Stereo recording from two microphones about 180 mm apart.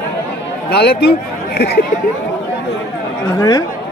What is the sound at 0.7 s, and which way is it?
Speech, 60° left (ahead or behind).